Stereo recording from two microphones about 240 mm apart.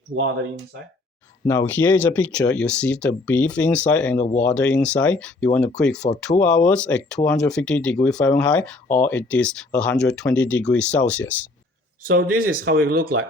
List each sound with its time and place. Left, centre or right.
0.1 s speech: right
1.5 s speech: centre
12.0 s speech: right